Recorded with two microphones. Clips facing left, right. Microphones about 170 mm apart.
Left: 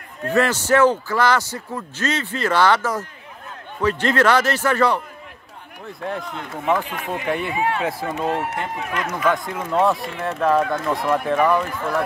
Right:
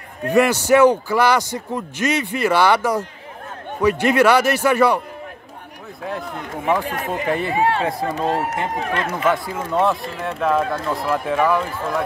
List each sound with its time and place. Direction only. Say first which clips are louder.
0.2 s a man's voice: right 3 dB; 15° right (ahead or behind)
6.5 s a man's voice: right 1 dB; 10° right (ahead or behind)
6.9 s speech: right 2 dB; 45° right (ahead or behind)
9.3 s speech: right 1 dB; 5° right (ahead or behind)